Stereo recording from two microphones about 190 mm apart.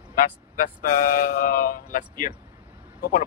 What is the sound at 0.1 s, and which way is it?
Speech, 45° left (ahead or behind).